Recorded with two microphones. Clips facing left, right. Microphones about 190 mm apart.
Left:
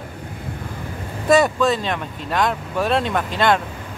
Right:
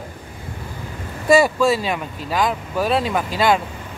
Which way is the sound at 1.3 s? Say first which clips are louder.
Right 1 dB; 5° right (ahead or behind).